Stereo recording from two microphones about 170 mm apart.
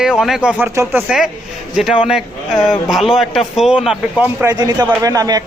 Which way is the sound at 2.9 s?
Centre (ahead or behind).